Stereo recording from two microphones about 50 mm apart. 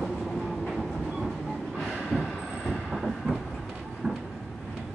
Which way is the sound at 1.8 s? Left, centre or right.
Centre.